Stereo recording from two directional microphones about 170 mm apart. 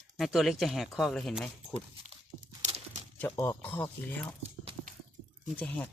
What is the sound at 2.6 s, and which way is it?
Horse, 40° right (ahead or behind).